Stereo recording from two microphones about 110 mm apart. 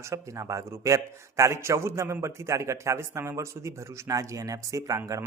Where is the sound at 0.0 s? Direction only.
30° right (ahead or behind).